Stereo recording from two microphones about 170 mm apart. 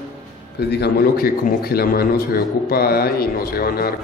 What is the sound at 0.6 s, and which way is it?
A man's voice, 75° left (ahead or behind).